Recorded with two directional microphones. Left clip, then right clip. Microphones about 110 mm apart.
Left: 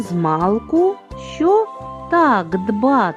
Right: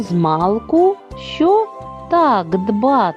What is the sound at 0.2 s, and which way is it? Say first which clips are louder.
Speech: right 1 dB; 30° right (ahead or behind).